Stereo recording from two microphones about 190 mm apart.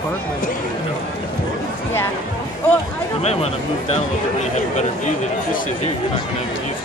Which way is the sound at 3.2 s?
35° left (ahead or behind).